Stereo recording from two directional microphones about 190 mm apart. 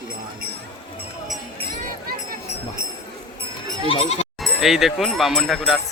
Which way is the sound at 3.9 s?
30° left (ahead or behind).